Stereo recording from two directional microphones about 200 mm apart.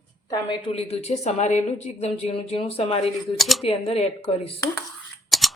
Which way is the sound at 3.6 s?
30° left (ahead or behind).